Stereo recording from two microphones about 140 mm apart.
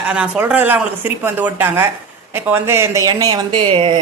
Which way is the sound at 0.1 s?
10° right (ahead or behind).